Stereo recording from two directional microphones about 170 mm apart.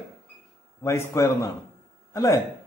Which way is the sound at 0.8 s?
15° left (ahead or behind).